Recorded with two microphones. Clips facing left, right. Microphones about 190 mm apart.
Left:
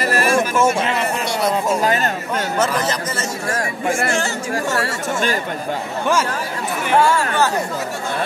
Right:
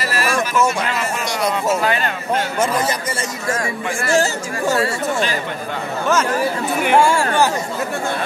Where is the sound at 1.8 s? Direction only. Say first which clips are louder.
Left 1 dB; 40° left (ahead or behind).